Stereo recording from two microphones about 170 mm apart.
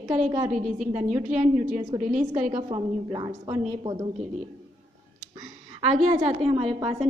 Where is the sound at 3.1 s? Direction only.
25° right (ahead or behind).